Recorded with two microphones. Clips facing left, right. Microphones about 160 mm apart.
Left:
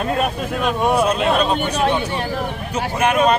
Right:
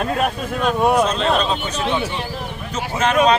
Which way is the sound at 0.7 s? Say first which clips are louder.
Right 1 dB; 10° left (ahead or behind).